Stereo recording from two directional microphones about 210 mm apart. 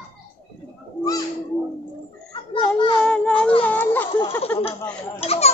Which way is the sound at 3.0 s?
5° left (ahead or behind).